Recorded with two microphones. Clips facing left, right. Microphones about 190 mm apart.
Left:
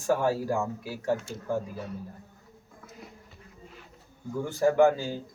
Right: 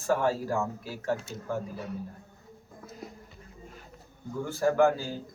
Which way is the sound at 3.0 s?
40° right (ahead or behind).